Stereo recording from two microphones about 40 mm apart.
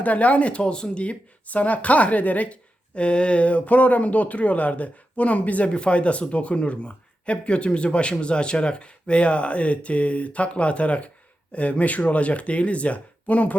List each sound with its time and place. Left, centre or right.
0.0 s speech: left